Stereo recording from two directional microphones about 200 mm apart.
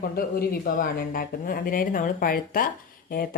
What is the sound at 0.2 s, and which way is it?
Speech, 50° left (ahead or behind).